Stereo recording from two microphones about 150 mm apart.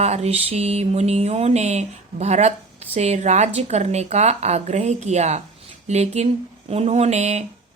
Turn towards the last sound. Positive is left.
turn(degrees=-50)  # may be behind; listen again after turning